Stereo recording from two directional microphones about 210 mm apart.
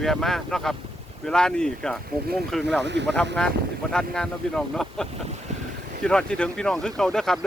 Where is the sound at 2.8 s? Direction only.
55° right (ahead or behind).